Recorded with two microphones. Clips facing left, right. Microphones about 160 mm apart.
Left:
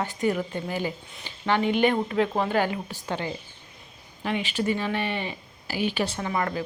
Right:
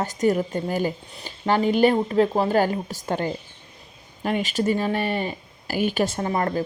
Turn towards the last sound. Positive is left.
turn(degrees=-40)  # may be behind; listen again after turning